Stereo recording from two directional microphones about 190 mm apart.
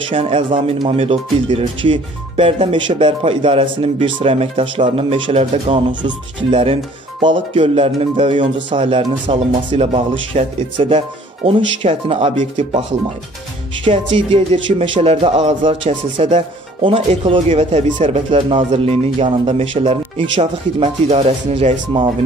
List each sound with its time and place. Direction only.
0.1 s speech: 30° right (ahead or behind)
13.8 s speech: 30° right (ahead or behind)